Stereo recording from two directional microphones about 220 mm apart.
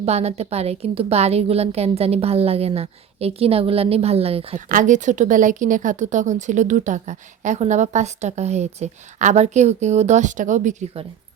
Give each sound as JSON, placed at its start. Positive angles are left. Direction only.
{"t": 0.0, "sound": "a woman's voice", "side_deg": -30}